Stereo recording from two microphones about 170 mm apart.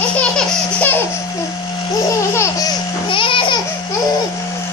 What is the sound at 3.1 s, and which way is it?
Babbling, 30° left (ahead or behind).